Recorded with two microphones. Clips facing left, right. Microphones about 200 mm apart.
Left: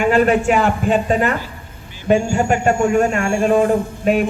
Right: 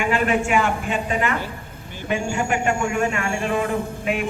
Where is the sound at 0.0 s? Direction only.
40° left (ahead or behind).